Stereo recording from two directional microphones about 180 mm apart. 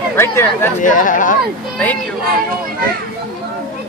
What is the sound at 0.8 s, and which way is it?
Speech, 45° left (ahead or behind).